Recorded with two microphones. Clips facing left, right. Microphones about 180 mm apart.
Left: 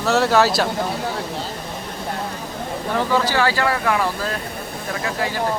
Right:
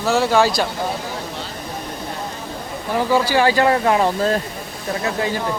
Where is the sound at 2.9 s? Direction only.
10° right (ahead or behind).